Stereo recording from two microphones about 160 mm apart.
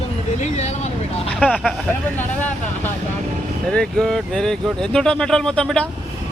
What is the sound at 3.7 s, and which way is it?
Speech, 5° left (ahead or behind).